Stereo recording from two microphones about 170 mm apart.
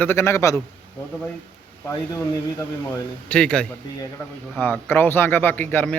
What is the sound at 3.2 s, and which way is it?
A man's voice, 5° left (ahead or behind).